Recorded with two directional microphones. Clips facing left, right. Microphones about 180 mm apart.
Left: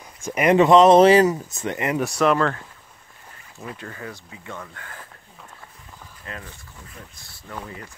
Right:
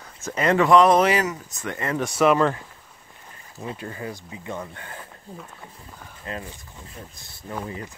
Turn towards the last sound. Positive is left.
turn(degrees=-20)  # may be behind; listen again after turning